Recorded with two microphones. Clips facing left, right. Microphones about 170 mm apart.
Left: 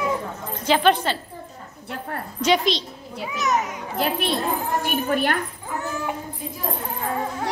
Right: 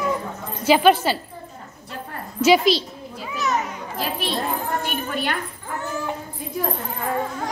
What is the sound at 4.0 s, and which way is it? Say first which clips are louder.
A child's voice: left 3 dB; 55° left (ahead or behind).